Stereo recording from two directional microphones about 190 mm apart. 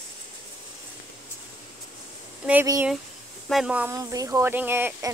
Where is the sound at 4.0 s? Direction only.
20° right (ahead or behind).